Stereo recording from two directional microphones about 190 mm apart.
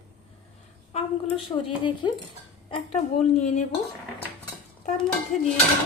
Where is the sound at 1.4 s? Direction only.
25° left (ahead or behind).